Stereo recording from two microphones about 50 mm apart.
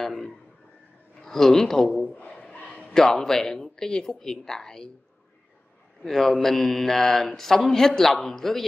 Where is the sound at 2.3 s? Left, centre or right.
Centre.